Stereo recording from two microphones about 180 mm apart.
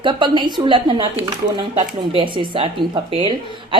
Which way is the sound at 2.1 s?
25° right (ahead or behind).